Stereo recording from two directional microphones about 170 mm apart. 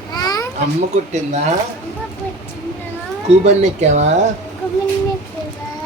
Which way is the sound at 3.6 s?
40° right (ahead or behind).